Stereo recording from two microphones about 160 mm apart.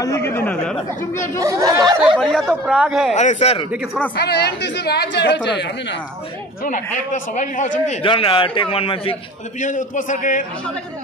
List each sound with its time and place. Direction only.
0.0 s speech: 15° left (ahead or behind)
1.4 s speech: 20° right (ahead or behind)
2.1 s speech: centre (ahead or behind)
3.2 s a man's voice: 45° left (ahead or behind)
3.7 s speech: 5° right (ahead or behind)
4.1 s speech: 90° left
7.1 s a man's voice: 50° left (ahead or behind)
8.0 s a man's voice: 35° left (ahead or behind)
9.6 s a man's voice: 50° left (ahead or behind)